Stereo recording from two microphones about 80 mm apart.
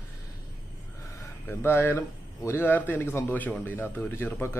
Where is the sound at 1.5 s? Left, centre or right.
Left.